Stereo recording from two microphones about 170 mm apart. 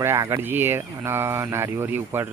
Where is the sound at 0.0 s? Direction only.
15° right (ahead or behind).